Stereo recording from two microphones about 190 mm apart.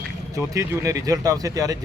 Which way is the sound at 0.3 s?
15° right (ahead or behind).